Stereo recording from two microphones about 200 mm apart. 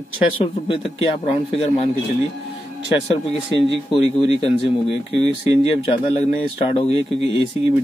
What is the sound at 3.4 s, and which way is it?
Speech, 25° left (ahead or behind).